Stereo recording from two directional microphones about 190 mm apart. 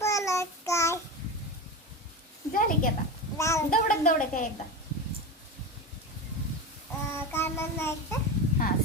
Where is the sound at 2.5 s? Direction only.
45° left (ahead or behind).